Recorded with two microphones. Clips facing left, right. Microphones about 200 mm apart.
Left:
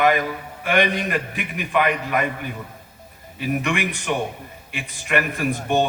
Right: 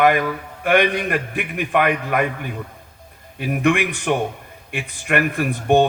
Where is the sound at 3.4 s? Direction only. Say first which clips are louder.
Right 4 dB; 55° right (ahead or behind).